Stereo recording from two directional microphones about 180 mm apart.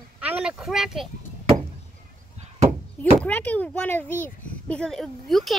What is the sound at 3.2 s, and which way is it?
A child's voice, 10° left (ahead or behind).